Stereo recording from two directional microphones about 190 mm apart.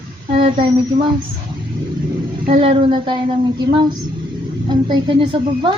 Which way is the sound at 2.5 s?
30° right (ahead or behind).